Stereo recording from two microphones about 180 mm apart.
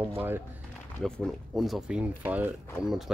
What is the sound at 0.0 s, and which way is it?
Speech, 10° right (ahead or behind).